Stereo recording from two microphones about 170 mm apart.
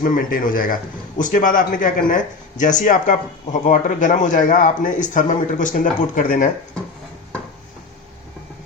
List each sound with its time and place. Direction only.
0.0 s a man's voice: 55° left (ahead or behind)